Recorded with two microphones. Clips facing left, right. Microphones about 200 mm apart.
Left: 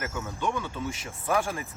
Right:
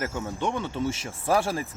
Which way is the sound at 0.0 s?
25° right (ahead or behind).